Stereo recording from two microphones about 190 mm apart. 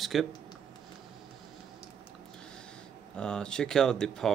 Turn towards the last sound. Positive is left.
turn(degrees=5)  # may be behind; listen again after turning